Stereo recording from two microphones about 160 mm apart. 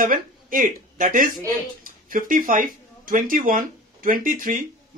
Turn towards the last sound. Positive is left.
turn(degrees=-60)  # may be behind; listen again after turning